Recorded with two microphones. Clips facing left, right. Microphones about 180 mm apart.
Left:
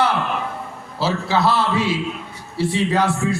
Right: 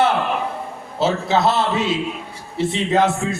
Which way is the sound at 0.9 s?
20° right (ahead or behind).